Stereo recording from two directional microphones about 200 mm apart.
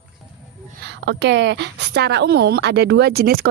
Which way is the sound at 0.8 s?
60° right (ahead or behind).